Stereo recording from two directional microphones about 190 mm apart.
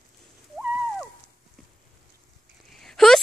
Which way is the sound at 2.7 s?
Centre (ahead or behind).